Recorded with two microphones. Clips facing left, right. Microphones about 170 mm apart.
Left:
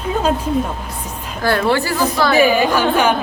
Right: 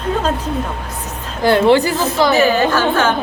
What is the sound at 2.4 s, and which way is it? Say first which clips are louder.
Speech: even; 10° left (ahead or behind).